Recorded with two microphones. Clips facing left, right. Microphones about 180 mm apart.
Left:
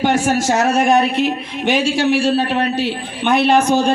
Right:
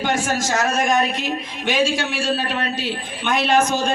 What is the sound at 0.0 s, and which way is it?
Speech, 65° left (ahead or behind).